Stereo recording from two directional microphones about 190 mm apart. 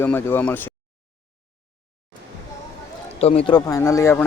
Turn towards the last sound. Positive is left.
turn(degrees=15)  # may be behind; listen again after turning